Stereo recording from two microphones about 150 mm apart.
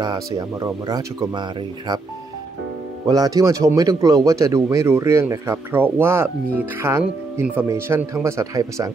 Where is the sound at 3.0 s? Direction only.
25° right (ahead or behind).